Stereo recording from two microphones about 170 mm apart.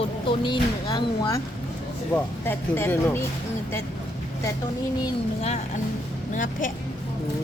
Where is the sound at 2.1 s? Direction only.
10° left (ahead or behind).